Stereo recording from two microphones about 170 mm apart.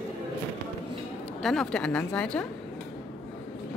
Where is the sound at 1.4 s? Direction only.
5° left (ahead or behind).